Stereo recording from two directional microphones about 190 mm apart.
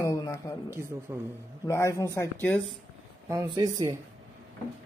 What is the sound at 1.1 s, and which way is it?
Speech, 20° right (ahead or behind).